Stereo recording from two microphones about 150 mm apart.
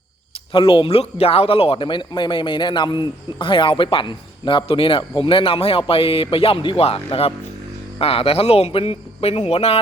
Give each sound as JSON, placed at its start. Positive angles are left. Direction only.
{"t": 0.5, "sound": "speech", "side_deg": 35}